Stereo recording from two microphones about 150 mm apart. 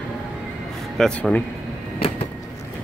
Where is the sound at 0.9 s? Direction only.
5° left (ahead or behind).